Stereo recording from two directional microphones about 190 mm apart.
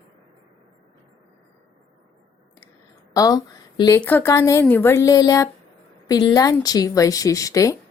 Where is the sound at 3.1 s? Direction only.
20° left (ahead or behind).